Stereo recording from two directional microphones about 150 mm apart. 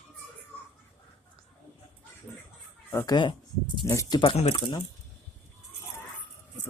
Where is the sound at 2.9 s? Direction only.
20° left (ahead or behind).